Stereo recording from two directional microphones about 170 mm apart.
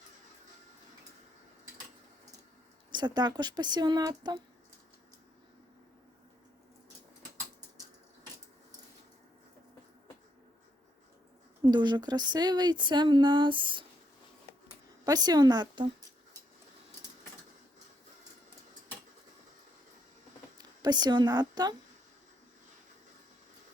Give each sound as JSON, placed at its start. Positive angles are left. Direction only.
{"t": 2.9, "sound": "a woman's voice", "side_deg": -25}
{"t": 11.6, "sound": "a woman's voice", "side_deg": -25}
{"t": 15.0, "sound": "a woman's voice", "side_deg": -20}
{"t": 20.6, "sound": "a woman's voice", "side_deg": -25}